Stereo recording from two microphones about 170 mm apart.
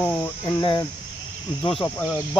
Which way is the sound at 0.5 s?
20° left (ahead or behind).